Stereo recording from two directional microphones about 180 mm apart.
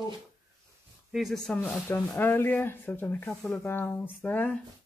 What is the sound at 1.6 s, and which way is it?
Speech, 15° left (ahead or behind).